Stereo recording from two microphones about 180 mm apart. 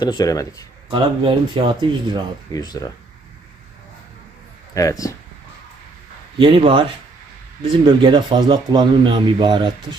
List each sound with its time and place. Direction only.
0.0 s speech: 25° left (ahead or behind)
0.9 s speech: 30° right (ahead or behind)
2.5 s speech: 20° left (ahead or behind)
4.7 s speech: 20° left (ahead or behind)
6.4 s speech: 30° right (ahead or behind)